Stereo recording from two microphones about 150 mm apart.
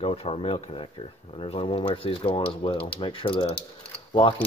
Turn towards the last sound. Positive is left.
turn(degrees=30)  # may be behind; listen again after turning